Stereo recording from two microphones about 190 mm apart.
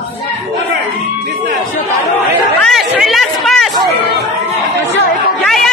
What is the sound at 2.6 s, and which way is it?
Chatter, centre (ahead or behind).